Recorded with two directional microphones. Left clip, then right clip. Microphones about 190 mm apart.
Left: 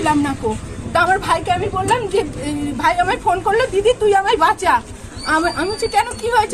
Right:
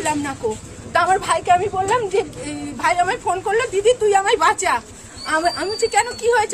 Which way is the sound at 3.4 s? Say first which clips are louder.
Even; 10° right (ahead or behind).